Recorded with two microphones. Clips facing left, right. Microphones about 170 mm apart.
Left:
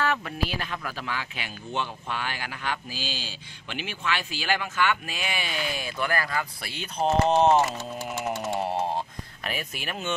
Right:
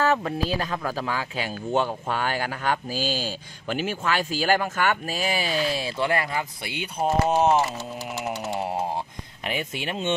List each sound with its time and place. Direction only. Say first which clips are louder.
0.0 s speech: right 5 dB; 35° right (ahead or behind); by 6.9 s 20° right (ahead or behind)
7.0 s speech: even; 5° right (ahead or behind)
9.4 s speech: right 5 dB; 25° right (ahead or behind)